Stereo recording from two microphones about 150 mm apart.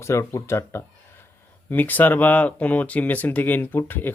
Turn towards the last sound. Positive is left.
turn(degrees=15)  # may be behind; listen again after turning